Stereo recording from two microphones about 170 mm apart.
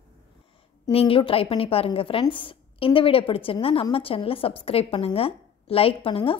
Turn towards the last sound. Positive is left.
turn(degrees=35)  # may be behind; listen again after turning